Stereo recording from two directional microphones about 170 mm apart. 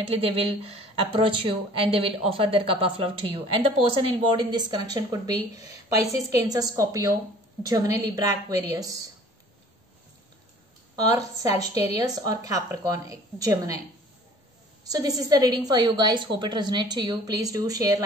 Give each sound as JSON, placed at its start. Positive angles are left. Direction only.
{"t": 0.1, "sound": "a woman's voice", "side_deg": -35}
{"t": 11.0, "sound": "a woman's voice", "side_deg": -20}
{"t": 14.9, "sound": "a woman's voice", "side_deg": -20}